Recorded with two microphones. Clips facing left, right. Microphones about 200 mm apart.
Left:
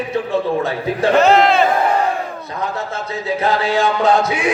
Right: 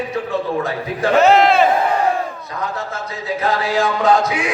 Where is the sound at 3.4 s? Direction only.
25° left (ahead or behind).